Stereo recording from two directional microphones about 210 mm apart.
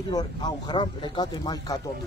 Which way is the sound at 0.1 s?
20° left (ahead or behind).